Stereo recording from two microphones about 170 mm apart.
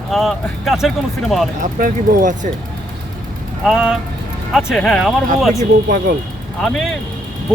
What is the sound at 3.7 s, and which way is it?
Speech, 5° right (ahead or behind).